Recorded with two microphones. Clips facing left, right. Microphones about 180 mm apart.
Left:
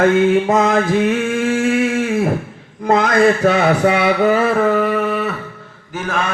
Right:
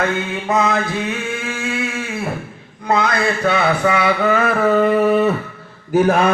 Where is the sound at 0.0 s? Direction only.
45° left (ahead or behind).